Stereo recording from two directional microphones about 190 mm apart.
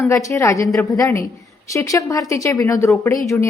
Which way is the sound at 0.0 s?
15° left (ahead or behind).